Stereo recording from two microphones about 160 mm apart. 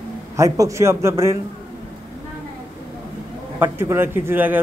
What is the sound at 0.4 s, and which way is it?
A man's voice, 20° right (ahead or behind).